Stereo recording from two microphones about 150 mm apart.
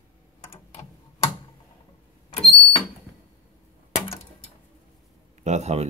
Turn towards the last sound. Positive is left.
turn(degrees=-45)  # may be behind; listen again after turning